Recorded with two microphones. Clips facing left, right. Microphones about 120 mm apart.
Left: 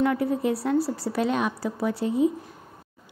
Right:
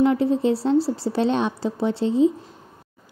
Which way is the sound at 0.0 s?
25° right (ahead or behind).